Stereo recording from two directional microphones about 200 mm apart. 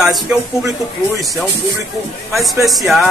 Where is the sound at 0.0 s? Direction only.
5° right (ahead or behind).